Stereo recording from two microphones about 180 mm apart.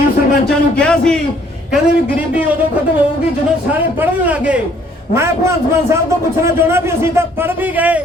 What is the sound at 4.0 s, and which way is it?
A man's voice, 10° right (ahead or behind).